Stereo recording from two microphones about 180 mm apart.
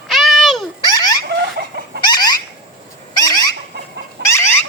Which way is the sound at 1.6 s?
65° right (ahead or behind).